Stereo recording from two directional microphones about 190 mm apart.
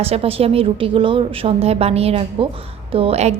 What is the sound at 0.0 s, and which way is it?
A woman's voice, 30° right (ahead or behind).